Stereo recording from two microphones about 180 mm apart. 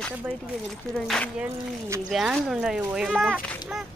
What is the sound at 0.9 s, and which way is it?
Speech, centre (ahead or behind).